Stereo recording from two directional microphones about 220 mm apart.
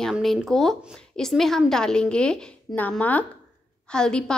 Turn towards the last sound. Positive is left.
turn(degrees=5)  # may be behind; listen again after turning